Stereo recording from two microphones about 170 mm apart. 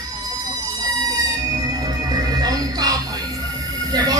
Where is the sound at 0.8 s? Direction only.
20° right (ahead or behind).